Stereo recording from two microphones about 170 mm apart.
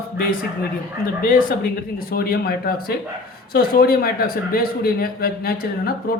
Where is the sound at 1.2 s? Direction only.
60° left (ahead or behind).